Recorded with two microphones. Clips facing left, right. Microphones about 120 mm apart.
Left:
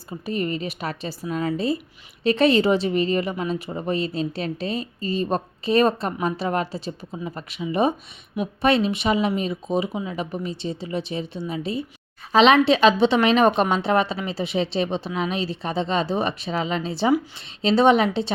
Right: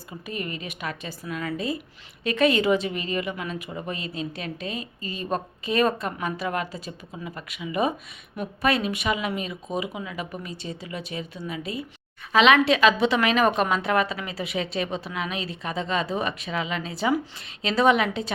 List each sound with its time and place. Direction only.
0.3 s a woman's voice: 30° left (ahead or behind)